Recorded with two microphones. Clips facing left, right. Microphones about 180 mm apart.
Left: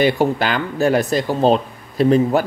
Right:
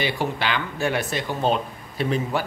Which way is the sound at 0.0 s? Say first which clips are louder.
Left 9 dB; 45° left (ahead or behind).